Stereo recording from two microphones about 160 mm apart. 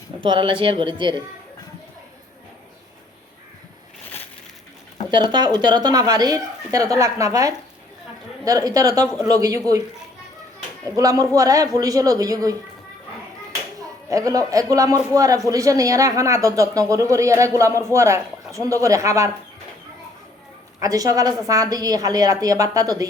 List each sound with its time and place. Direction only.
0.2 s speech: 30° right (ahead or behind)
5.1 s a woman's voice: 25° right (ahead or behind)
10.8 s a woman's voice: 20° right (ahead or behind)
14.1 s a woman's voice: 20° right (ahead or behind)
20.7 s a woman's voice: 20° right (ahead or behind)